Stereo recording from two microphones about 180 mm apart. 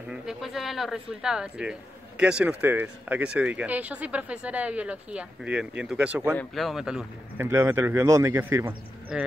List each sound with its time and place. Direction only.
0.1 s speech: centre (ahead or behind)
7.4 s speech: 15° right (ahead or behind)
9.1 s speech: 5° right (ahead or behind)